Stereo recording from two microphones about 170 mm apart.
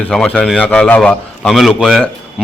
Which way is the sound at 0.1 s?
5° left (ahead or behind).